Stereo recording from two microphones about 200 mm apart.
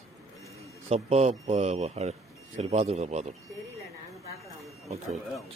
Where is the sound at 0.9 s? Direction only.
30° right (ahead or behind).